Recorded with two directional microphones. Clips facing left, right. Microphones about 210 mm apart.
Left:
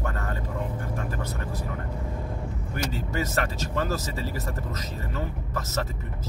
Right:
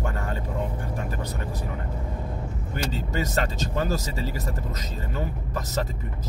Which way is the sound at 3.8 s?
15° right (ahead or behind).